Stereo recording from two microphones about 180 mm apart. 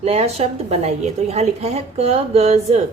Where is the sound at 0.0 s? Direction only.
35° right (ahead or behind).